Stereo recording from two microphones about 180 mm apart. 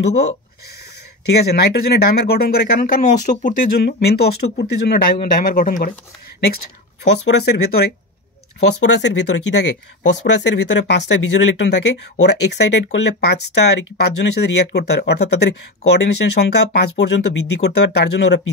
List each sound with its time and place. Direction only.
1.2 s speech: 65° left (ahead or behind)
7.2 s speech: 70° left (ahead or behind)
9.2 s speech: 75° left (ahead or behind)